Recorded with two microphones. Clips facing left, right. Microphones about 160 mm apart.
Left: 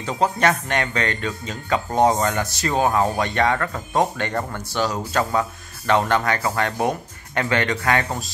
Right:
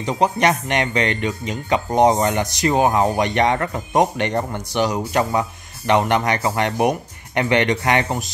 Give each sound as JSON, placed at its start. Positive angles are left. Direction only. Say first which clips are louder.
{"t": 0.0, "sound": "speech", "louder": "right 2 dB", "side_deg": -15}